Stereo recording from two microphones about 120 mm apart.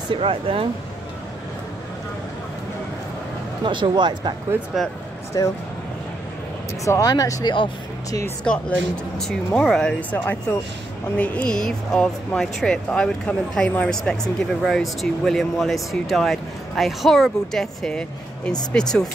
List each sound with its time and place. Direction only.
0.1 s speech: 50° right (ahead or behind)
3.6 s speech: 40° right (ahead or behind)
4.7 s speech: 5° right (ahead or behind)
5.3 s speech: 30° left (ahead or behind)
6.8 s speech: 30° left (ahead or behind)
9.5 s speech: 5° left (ahead or behind)